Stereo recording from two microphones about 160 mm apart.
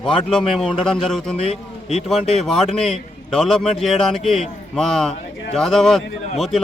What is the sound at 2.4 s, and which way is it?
A man's voice, centre (ahead or behind).